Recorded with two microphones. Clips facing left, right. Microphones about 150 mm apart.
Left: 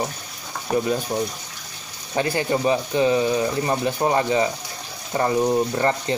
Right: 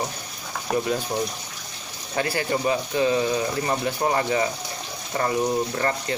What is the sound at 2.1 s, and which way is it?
Speech, 20° left (ahead or behind).